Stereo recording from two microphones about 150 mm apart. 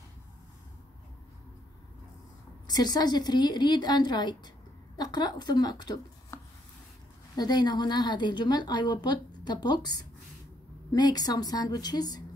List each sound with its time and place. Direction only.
2.6 s a woman's voice: 25° left (ahead or behind)